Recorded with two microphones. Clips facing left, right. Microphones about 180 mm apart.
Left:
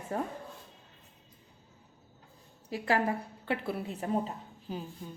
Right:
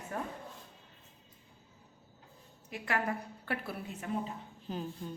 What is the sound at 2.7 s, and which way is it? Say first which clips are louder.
A woman's voice: left 5 dB; 30° left (ahead or behind).